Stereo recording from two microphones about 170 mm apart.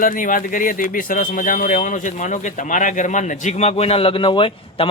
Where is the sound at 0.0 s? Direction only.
50° left (ahead or behind).